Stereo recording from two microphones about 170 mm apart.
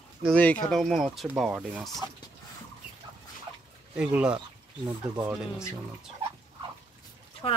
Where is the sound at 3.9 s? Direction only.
5° right (ahead or behind).